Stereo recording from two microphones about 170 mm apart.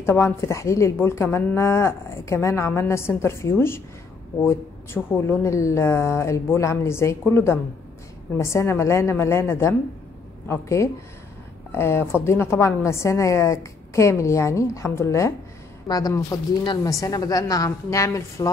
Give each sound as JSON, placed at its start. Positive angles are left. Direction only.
{"t": 0.0, "sound": "a woman's voice", "side_deg": 15}